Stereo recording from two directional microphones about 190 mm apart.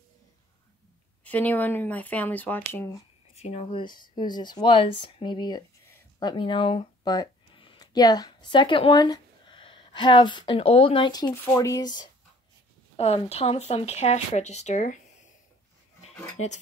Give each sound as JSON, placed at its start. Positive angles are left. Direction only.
{"t": 1.2, "sound": "speech", "side_deg": 10}
{"t": 3.3, "sound": "speech", "side_deg": 35}
{"t": 12.9, "sound": "speech", "side_deg": 30}
{"t": 16.4, "sound": "speech", "side_deg": 90}